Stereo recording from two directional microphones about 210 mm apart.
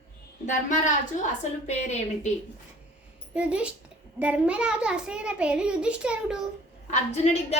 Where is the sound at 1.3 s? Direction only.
35° left (ahead or behind).